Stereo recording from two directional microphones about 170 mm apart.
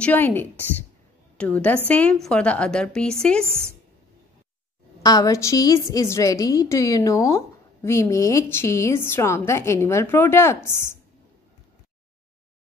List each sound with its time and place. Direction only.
0.0 s a woman's voice: 10° left (ahead or behind)
5.0 s a woman's voice: 20° left (ahead or behind)